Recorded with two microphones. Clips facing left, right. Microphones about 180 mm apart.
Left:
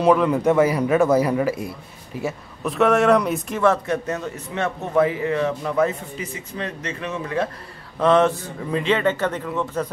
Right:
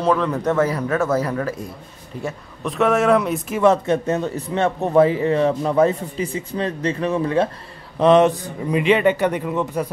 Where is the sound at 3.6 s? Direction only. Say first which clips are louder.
Right 4 dB; 20° right (ahead or behind).